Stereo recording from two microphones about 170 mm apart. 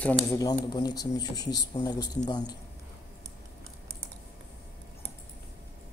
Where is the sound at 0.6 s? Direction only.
20° left (ahead or behind).